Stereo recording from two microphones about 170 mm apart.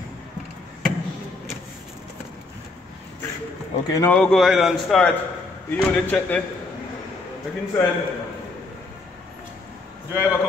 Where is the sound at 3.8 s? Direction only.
20° left (ahead or behind).